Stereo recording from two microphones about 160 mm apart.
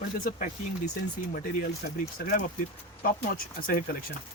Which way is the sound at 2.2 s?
75° left (ahead or behind).